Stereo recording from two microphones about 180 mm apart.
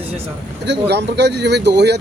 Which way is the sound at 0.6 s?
70° right (ahead or behind).